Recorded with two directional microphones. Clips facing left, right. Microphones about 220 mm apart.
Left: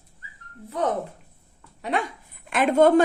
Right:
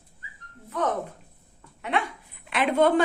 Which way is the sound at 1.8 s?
40° left (ahead or behind).